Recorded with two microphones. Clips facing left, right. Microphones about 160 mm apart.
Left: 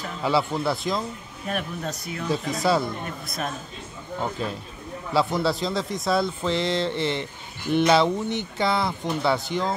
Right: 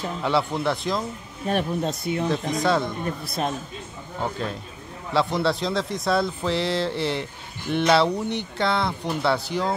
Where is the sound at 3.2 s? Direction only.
30° right (ahead or behind).